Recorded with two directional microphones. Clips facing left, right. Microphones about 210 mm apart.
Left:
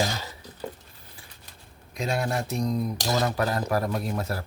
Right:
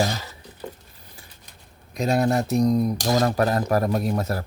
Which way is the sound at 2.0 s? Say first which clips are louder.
Right 7 dB; 40° right (ahead or behind).